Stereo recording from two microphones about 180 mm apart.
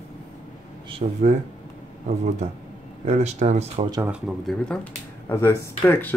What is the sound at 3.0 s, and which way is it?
Speech, 40° right (ahead or behind).